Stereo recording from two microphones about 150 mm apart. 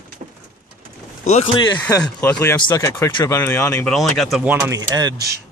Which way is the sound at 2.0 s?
10° left (ahead or behind).